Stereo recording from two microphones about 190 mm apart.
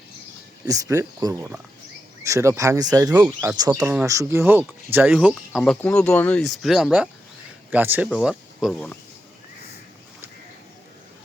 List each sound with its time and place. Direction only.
0.6 s speech: 20° right (ahead or behind); by 9.0 s centre (ahead or behind)